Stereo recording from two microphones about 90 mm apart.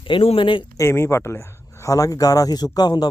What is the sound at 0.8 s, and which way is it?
A man's voice, 30° left (ahead or behind).